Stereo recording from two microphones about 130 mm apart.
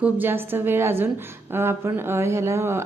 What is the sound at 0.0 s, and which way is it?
A woman's voice, 15° right (ahead or behind).